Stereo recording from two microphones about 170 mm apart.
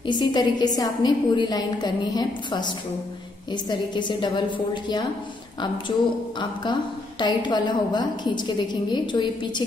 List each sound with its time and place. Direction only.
0.0 s a woman's voice: 25° left (ahead or behind)
6.6 s a woman's voice: 25° left (ahead or behind)